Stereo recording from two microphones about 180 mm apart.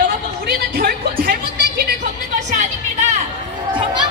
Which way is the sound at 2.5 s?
45° right (ahead or behind).